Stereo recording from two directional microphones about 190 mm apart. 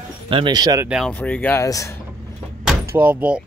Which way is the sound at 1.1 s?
5° left (ahead or behind).